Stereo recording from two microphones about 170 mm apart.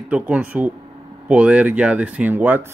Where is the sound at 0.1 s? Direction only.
10° right (ahead or behind).